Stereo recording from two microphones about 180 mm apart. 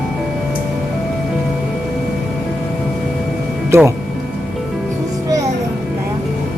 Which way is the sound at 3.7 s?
15° right (ahead or behind).